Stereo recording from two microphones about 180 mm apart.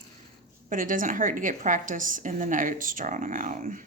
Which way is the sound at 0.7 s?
50° right (ahead or behind).